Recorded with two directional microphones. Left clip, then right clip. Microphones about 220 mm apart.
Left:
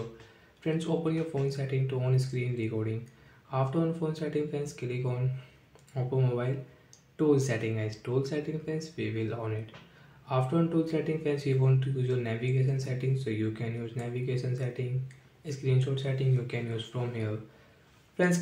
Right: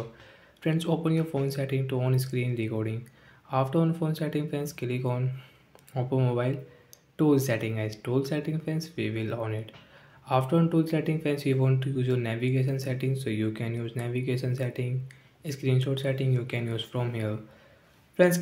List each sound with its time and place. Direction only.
0.6 s speech: 40° right (ahead or behind)